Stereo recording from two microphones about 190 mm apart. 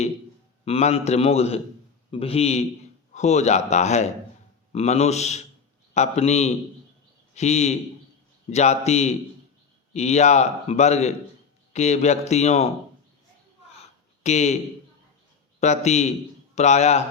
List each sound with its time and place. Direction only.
0.6 s a man's voice: 35° left (ahead or behind)
14.3 s a man's voice: 35° left (ahead or behind)
15.6 s a man's voice: 35° left (ahead or behind)